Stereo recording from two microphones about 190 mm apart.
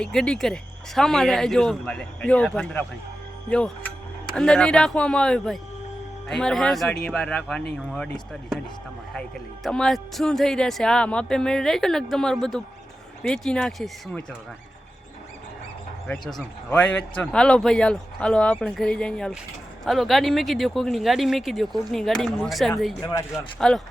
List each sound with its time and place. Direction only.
0.0 s speech: 5° left (ahead or behind)
9.6 s speech: centre (ahead or behind)
16.0 s speech: centre (ahead or behind)
23.0 s speech: 20° left (ahead or behind)
23.6 s speech: 5° left (ahead or behind)